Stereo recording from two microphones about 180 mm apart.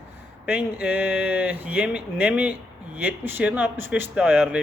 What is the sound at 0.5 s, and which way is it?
Speech, 5° right (ahead or behind).